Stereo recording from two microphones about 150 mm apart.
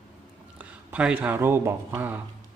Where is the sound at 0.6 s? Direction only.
10° right (ahead or behind).